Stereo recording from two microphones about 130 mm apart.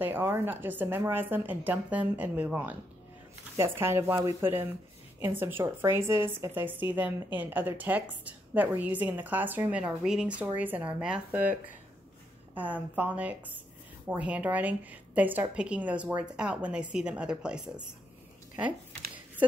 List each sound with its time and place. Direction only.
0.0 s a woman's voice: 15° right (ahead or behind)
12.5 s a woman's voice: 10° right (ahead or behind)